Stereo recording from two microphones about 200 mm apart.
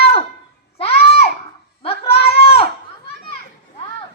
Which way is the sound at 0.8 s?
30° left (ahead or behind).